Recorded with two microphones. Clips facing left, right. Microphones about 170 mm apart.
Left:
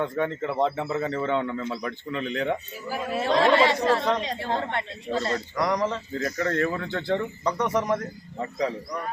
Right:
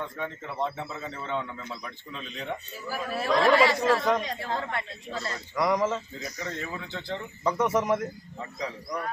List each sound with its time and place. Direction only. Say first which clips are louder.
0.0 s speech: left 9 dB; 65° left (ahead or behind)
2.9 s speech: left 2 dB; 20° left (ahead or behind)
3.6 s a man's voice: left 1 dB; centre (ahead or behind)
3.8 s speech: left 1 dB; 30° left (ahead or behind)
5.5 s a man's voice: right 2 dB; centre (ahead or behind)
6.1 s speech: left 10 dB; 60° left (ahead or behind)
7.4 s a man's voice: right 3 dB; 5° right (ahead or behind)